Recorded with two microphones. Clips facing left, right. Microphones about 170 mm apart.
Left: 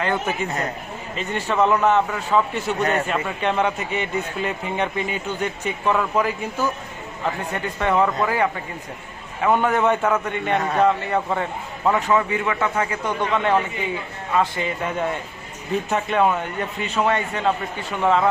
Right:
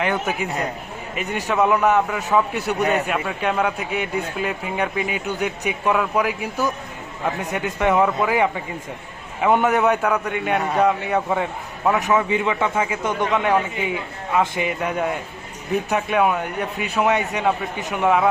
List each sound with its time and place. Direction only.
0.0 s speech: 15° right (ahead or behind)
8.0 s speech: 5° right (ahead or behind)
9.4 s speech: 15° right (ahead or behind)
9.8 s speech: centre (ahead or behind)